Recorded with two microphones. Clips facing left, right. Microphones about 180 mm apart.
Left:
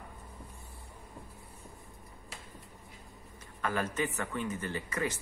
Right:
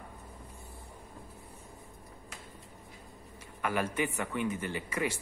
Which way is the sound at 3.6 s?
15° right (ahead or behind).